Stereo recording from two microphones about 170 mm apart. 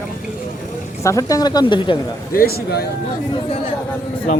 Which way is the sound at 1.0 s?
20° left (ahead or behind).